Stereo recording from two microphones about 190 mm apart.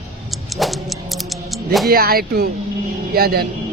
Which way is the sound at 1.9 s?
50° right (ahead or behind).